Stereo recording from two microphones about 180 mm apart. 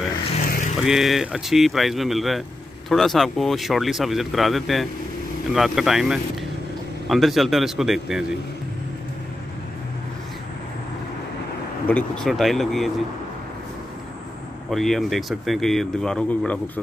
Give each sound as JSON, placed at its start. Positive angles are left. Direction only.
{"t": 0.4, "sound": "vehicle", "side_deg": 45}
{"t": 0.7, "sound": "speech", "side_deg": -5}
{"t": 11.9, "sound": "speech", "side_deg": 0}
{"t": 14.7, "sound": "speech", "side_deg": 0}